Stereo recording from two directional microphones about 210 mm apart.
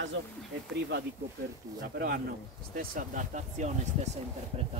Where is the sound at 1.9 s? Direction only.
45° right (ahead or behind).